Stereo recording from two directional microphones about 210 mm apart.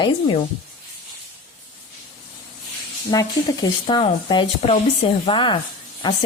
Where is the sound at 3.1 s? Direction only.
20° left (ahead or behind).